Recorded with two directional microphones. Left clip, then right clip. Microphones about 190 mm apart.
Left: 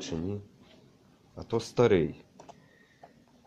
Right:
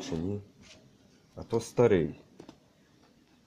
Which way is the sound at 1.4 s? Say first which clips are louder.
Even; 10° right (ahead or behind).